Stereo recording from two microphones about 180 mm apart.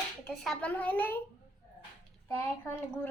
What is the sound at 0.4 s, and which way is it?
Speech, 10° left (ahead or behind).